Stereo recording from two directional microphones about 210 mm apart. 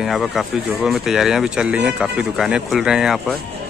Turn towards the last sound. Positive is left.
turn(degrees=0)  # may be behind; listen again after turning